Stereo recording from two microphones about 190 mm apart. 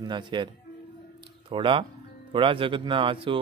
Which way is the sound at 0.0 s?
25° right (ahead or behind).